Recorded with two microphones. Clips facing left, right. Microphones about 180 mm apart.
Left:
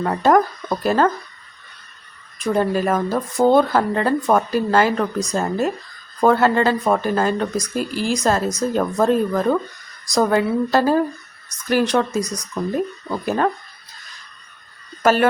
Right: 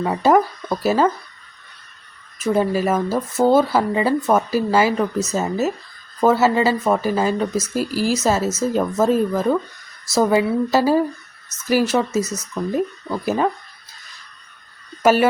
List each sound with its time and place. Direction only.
0.0 s speech: 5° right (ahead or behind)
2.4 s speech: 5° right (ahead or behind)
15.0 s speech: 10° right (ahead or behind)